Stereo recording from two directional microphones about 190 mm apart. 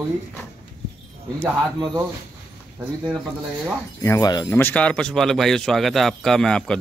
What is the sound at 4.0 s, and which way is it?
Speech, 15° left (ahead or behind).